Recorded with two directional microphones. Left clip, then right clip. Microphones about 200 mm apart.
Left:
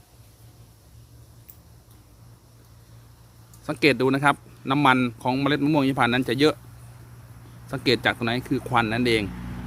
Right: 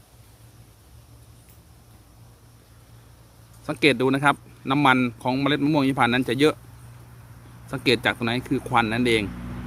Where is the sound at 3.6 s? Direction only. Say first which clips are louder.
Even; 5° left (ahead or behind).